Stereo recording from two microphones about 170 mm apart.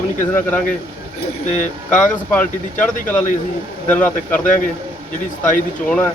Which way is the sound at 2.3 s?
10° left (ahead or behind).